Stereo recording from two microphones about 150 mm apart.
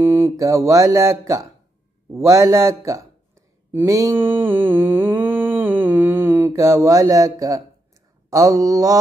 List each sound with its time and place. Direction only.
0.0 s speech: 15° right (ahead or behind)